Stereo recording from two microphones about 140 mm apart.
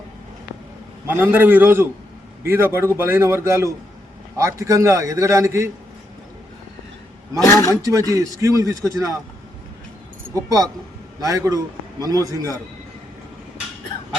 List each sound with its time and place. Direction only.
1.0 s a man's voice: 15° right (ahead or behind)
7.4 s speech: 20° left (ahead or behind)
7.7 s a man's voice: 25° right (ahead or behind)
10.3 s a man's voice: 25° right (ahead or behind)